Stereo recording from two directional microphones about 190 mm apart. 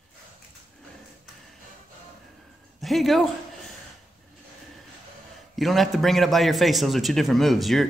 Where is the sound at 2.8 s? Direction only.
Centre (ahead or behind).